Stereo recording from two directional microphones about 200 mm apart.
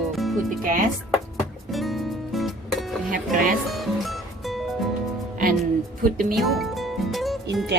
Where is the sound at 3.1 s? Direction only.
40° right (ahead or behind).